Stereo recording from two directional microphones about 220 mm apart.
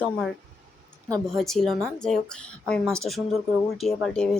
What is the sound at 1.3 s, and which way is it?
Speech, centre (ahead or behind).